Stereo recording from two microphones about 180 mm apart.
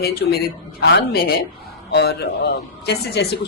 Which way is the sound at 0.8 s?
65° left (ahead or behind).